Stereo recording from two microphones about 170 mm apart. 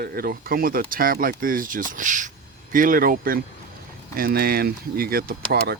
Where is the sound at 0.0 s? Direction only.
60° right (ahead or behind).